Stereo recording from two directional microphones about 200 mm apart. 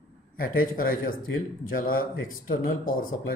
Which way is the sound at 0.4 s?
45° left (ahead or behind).